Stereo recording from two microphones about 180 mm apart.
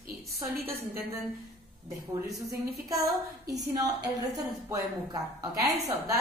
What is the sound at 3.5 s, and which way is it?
A woman's voice, 20° right (ahead or behind).